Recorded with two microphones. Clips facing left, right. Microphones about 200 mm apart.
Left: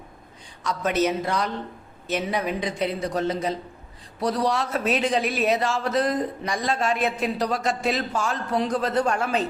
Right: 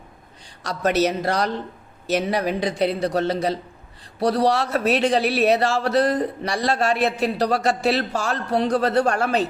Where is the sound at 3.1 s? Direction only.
70° right (ahead or behind).